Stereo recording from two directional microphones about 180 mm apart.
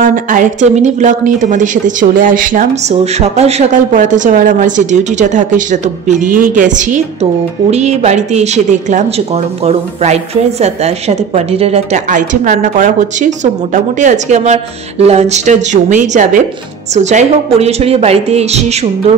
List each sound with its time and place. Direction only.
0.0 s a woman's voice: 45° right (ahead or behind)